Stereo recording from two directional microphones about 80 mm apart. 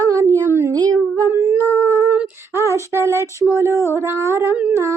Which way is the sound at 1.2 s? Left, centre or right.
Right.